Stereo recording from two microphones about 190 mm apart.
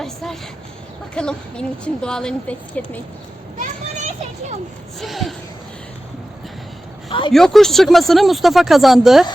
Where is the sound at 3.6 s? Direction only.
40° right (ahead or behind).